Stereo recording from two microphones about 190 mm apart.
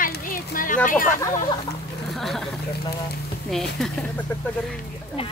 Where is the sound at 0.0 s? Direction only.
45° left (ahead or behind).